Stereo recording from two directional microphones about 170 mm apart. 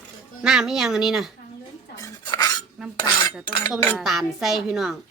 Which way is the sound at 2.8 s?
Centre (ahead or behind).